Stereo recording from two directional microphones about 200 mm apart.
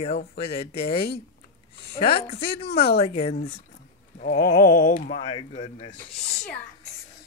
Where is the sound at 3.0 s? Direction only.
30° left (ahead or behind).